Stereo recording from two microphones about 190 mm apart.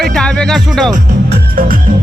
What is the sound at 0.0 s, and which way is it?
Speech, 5° left (ahead or behind).